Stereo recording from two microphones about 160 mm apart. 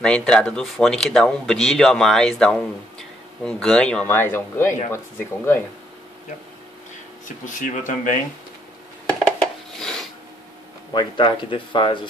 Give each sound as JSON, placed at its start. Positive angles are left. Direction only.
{"t": 0.0, "sound": "speech", "side_deg": 5}
{"t": 7.2, "sound": "speech", "side_deg": 55}
{"t": 9.4, "sound": "filing", "side_deg": 5}
{"t": 10.9, "sound": "speech", "side_deg": 30}